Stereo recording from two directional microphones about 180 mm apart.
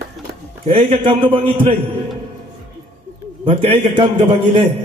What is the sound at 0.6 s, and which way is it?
A man's voice, 30° right (ahead or behind).